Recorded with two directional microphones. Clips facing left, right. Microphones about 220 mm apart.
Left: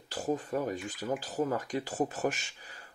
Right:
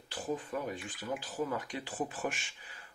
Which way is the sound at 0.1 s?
40° left (ahead or behind).